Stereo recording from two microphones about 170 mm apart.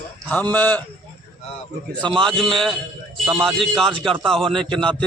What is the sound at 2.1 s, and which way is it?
A man's voice, centre (ahead or behind).